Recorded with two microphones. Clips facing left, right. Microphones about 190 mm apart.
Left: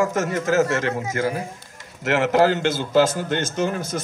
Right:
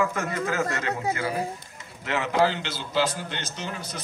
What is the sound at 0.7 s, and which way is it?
Speech, 90° left.